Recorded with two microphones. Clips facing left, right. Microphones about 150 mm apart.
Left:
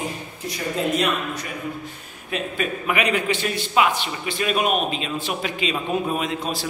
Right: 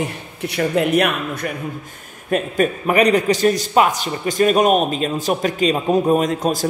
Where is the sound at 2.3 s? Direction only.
45° right (ahead or behind).